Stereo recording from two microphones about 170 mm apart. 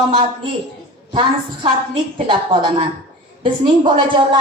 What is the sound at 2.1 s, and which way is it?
A woman's voice, 30° right (ahead or behind).